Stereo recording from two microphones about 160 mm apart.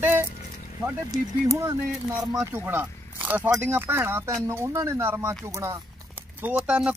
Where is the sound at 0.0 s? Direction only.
15° right (ahead or behind).